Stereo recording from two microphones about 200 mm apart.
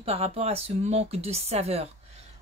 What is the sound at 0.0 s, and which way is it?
Speech, 30° right (ahead or behind).